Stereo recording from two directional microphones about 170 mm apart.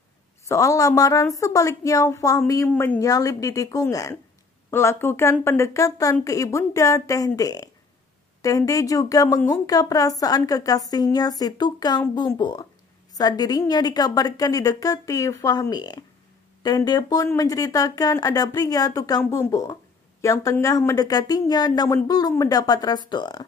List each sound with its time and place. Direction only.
0.5 s speech: 20° left (ahead or behind)
2.7 s speech: 10° left (ahead or behind)
3.0 s speech: 20° left (ahead or behind)